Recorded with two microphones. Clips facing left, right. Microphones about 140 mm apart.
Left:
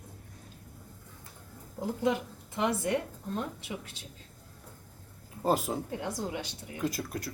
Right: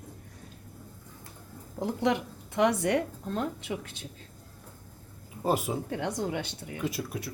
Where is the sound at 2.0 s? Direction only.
75° right (ahead or behind).